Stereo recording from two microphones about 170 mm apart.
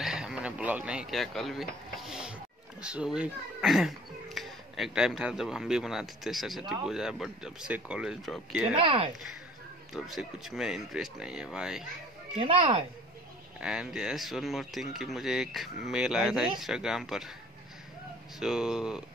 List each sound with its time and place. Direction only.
0.0 s speech: 5° right (ahead or behind)
8.7 s speech: 35° right (ahead or behind)
9.9 s speech: centre (ahead or behind)
12.4 s speech: 30° right (ahead or behind)
13.6 s speech: 5° right (ahead or behind)
18.4 s speech: 5° right (ahead or behind)